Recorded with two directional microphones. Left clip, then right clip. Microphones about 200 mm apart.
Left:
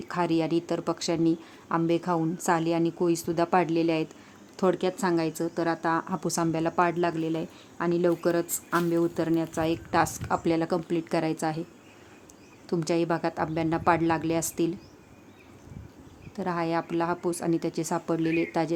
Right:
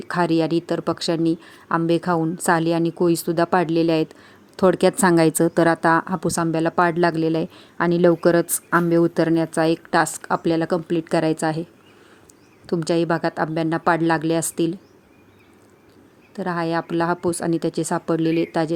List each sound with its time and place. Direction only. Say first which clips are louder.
0.0 s a woman's voice: right 7 dB; 20° right (ahead or behind)
12.6 s a woman's voice: right 6 dB; 20° right (ahead or behind)
16.3 s a woman's voice: right 5 dB; 15° right (ahead or behind)